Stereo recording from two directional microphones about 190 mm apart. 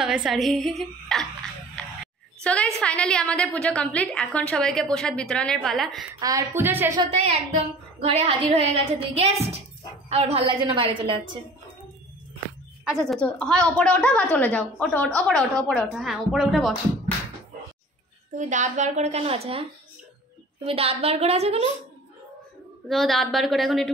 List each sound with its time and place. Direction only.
0.0 s a woman's voice: 5° right (ahead or behind)
6.1 s a woman's voice: 20° right (ahead or behind)
7.0 s a woman's voice: 35° right (ahead or behind)
12.8 s a woman's voice: centre (ahead or behind)
18.5 s a woman's voice: 40° right (ahead or behind)
20.6 s a woman's voice: 30° right (ahead or behind)
22.8 s a woman's voice: centre (ahead or behind)